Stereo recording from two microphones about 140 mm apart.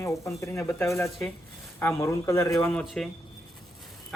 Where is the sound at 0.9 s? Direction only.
5° left (ahead or behind).